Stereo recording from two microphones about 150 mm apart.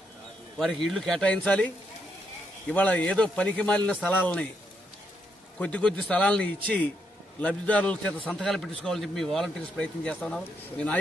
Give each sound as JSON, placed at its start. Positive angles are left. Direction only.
{"t": 0.6, "sound": "speech", "side_deg": 5}
{"t": 2.7, "sound": "a man's voice", "side_deg": 10}
{"t": 5.6, "sound": "a man's voice", "side_deg": 5}